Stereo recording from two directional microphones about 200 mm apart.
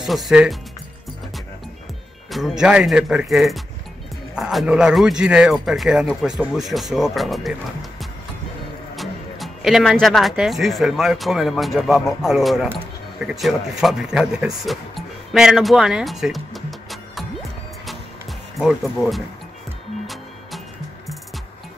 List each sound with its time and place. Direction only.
0.0 s speech: centre (ahead or behind)
2.3 s speech: centre (ahead or behind)
8.9 s speech: centre (ahead or behind)
13.2 s music: centre (ahead or behind)
18.6 s speech: centre (ahead or behind)